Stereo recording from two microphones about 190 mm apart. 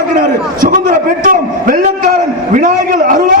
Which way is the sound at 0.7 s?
45° right (ahead or behind).